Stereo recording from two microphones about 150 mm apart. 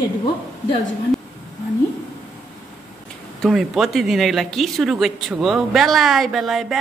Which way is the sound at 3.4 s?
Centre (ahead or behind).